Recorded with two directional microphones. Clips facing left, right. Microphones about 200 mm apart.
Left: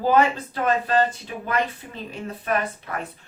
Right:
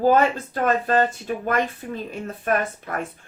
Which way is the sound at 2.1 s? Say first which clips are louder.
Right 1 dB; 50° right (ahead or behind).